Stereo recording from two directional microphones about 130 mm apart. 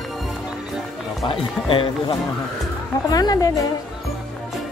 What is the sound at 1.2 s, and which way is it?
Speech, 40° left (ahead or behind).